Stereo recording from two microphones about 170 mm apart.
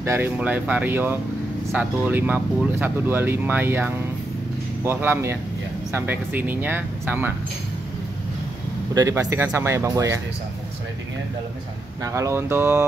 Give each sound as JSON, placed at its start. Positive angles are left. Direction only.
{"t": 0.0, "sound": "speech", "side_deg": -15}
{"t": 8.9, "sound": "speech", "side_deg": -20}
{"t": 12.0, "sound": "speech", "side_deg": -15}